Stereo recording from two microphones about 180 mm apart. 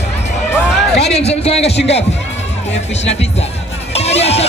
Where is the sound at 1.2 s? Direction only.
35° left (ahead or behind).